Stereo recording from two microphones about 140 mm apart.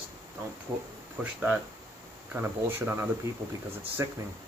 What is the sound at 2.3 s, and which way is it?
Speech, 15° right (ahead or behind).